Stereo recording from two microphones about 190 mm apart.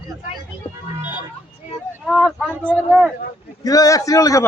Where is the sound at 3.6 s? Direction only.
20° left (ahead or behind).